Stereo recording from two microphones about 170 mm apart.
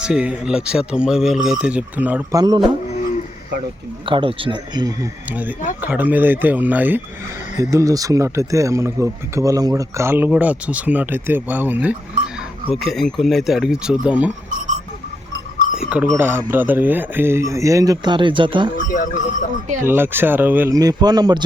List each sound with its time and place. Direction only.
0.0 s speech: 5° right (ahead or behind)
2.3 s speech: 25° right (ahead or behind)
4.0 s speech: 30° right (ahead or behind)
5.3 s speech: 10° right (ahead or behind)
12.7 s speech: centre (ahead or behind)
15.8 s speech: 5° right (ahead or behind); by 18.7 s 30° right (ahead or behind)
18.8 s speech: 50° left (ahead or behind)
19.8 s speech: 15° right (ahead or behind)
20.7 s speech: 25° right (ahead or behind)